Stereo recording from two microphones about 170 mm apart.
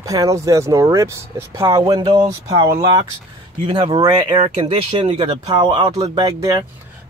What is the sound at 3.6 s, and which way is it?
Speech, 30° right (ahead or behind).